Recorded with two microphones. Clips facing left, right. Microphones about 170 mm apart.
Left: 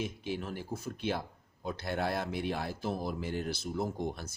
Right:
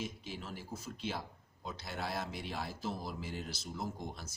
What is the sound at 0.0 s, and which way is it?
Speech, 60° left (ahead or behind).